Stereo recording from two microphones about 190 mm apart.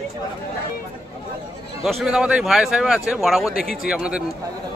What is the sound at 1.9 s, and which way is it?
A man's voice, centre (ahead or behind).